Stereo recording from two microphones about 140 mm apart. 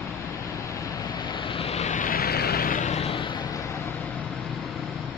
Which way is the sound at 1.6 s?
50° left (ahead or behind).